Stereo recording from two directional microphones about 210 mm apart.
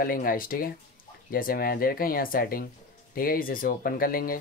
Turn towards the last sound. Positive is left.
turn(degrees=45)  # may be behind; listen again after turning